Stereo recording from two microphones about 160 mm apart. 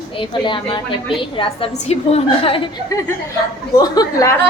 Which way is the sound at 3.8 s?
25° left (ahead or behind).